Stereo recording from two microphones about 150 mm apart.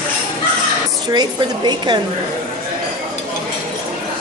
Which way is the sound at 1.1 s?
30° right (ahead or behind).